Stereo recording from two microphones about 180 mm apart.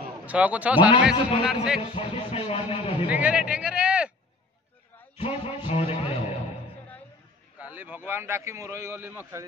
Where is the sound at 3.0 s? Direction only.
10° right (ahead or behind).